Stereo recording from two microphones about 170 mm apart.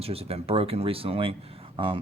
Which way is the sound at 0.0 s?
35° right (ahead or behind).